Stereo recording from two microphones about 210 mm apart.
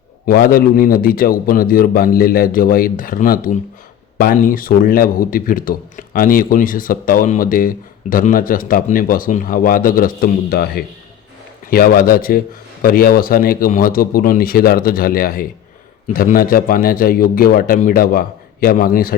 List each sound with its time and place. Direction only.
0.3 s a man's voice: 45° left (ahead or behind)